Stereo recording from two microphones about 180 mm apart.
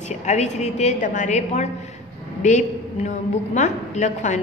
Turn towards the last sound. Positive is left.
turn(degrees=40)  # may be behind; listen again after turning